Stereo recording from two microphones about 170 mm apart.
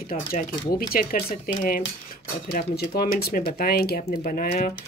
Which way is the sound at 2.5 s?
65° left (ahead or behind).